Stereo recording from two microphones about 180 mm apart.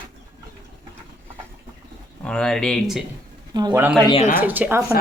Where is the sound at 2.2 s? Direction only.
5° left (ahead or behind).